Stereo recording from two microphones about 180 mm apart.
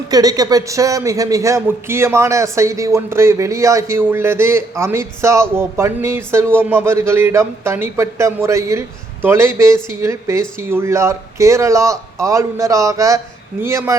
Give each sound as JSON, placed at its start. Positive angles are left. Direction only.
{"t": 0.1, "sound": "a man's voice", "side_deg": -20}